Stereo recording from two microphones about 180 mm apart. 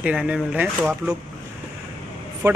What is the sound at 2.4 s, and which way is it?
Speech, 20° right (ahead or behind).